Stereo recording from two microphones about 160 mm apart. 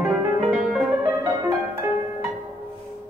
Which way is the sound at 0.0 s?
5° right (ahead or behind).